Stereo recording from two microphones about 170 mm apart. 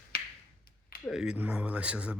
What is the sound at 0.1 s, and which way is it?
Finger snapping, 65° left (ahead or behind).